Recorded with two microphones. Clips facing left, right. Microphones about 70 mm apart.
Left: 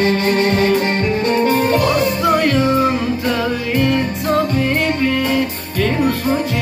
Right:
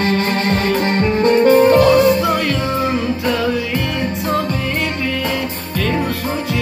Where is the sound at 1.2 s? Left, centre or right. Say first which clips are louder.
Right 7 dB; right.